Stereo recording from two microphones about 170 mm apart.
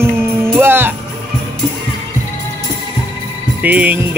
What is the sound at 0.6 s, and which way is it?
Music, 15° right (ahead or behind).